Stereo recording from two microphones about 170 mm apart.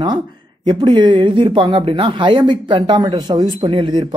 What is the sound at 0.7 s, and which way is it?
Speech, 25° right (ahead or behind).